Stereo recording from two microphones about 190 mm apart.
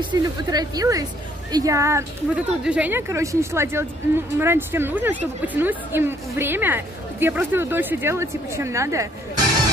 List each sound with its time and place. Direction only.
0.0 s a woman's voice: 20° right (ahead or behind)